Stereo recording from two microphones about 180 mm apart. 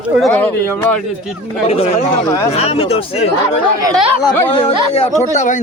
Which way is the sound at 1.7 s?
35° left (ahead or behind).